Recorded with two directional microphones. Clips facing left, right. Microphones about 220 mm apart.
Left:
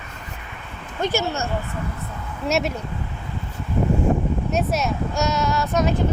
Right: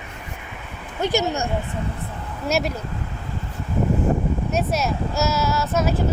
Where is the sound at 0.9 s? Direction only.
15° right (ahead or behind).